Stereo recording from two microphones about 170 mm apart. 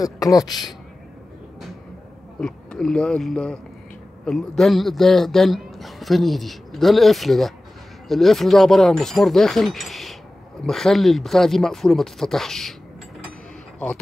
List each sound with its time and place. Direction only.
0.0 s a man's voice: 20° left (ahead or behind)
2.4 s a man's voice: 5° left (ahead or behind)